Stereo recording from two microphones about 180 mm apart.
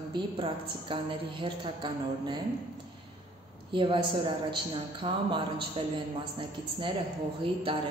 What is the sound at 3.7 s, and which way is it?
A woman's voice, 30° right (ahead or behind).